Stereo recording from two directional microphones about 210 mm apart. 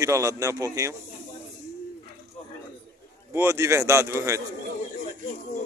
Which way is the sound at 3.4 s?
10° right (ahead or behind).